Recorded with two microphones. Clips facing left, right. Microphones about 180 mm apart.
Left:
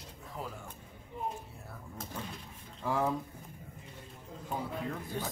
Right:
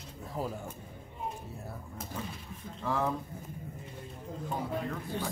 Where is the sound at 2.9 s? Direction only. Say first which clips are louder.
Even; 10° left (ahead or behind).